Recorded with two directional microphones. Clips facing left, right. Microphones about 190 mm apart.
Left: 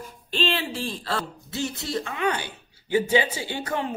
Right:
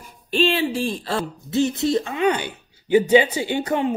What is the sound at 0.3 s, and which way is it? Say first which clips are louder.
Speech: right 7 dB; 15° right (ahead or behind).